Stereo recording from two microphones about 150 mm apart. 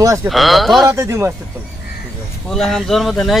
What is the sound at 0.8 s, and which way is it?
Speech, 20° right (ahead or behind).